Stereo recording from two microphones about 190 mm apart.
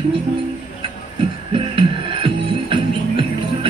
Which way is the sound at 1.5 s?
30° right (ahead or behind).